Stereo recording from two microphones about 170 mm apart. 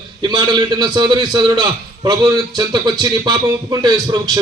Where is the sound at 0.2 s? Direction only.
25° right (ahead or behind).